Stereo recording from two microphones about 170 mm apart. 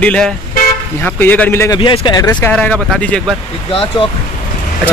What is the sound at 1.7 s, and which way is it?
Speech, 30° left (ahead or behind).